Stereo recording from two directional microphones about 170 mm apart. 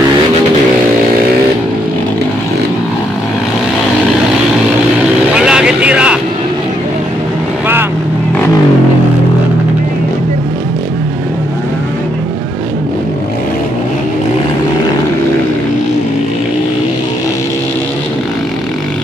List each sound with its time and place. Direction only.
5.3 s vehicle: 5° right (ahead or behind)